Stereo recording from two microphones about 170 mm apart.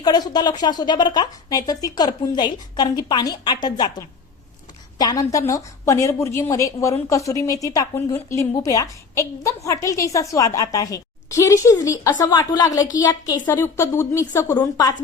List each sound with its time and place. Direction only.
0.0 s a woman's voice: 25° left (ahead or behind)
4.9 s a woman's voice: 20° left (ahead or behind)